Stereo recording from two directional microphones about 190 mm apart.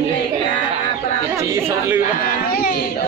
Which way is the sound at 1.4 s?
10° right (ahead or behind).